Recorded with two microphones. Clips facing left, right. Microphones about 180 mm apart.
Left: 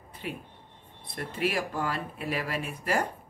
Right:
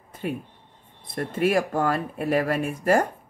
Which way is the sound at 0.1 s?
45° right (ahead or behind).